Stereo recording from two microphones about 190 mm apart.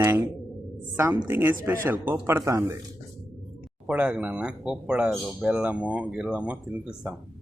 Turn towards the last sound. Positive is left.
turn(degrees=-5)  # may be behind; listen again after turning